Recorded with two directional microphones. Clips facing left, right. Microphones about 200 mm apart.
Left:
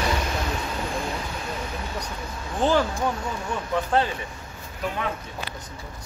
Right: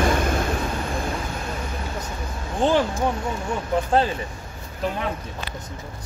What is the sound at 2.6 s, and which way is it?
Speech, 15° right (ahead or behind).